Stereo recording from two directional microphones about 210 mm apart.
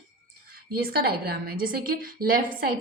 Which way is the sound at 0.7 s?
45° right (ahead or behind).